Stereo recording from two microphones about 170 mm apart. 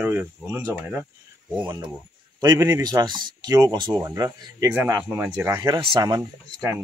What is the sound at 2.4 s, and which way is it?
Speech, 15° right (ahead or behind).